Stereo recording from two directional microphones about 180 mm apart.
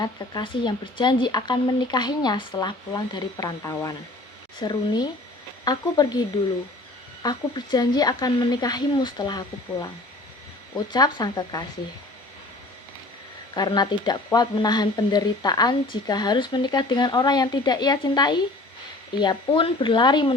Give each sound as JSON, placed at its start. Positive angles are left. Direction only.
{"t": 0.0, "sound": "speech", "side_deg": 25}
{"t": 13.5, "sound": "speech", "side_deg": 25}